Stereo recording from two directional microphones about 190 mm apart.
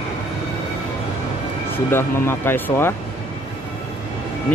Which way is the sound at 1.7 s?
10° left (ahead or behind).